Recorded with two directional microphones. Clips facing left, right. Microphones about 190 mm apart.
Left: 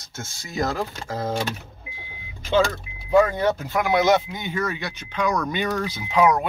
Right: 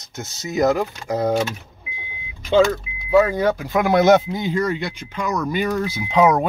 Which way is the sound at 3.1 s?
10° right (ahead or behind).